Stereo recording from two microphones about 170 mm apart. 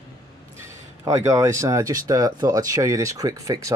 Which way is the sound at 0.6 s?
15° right (ahead or behind).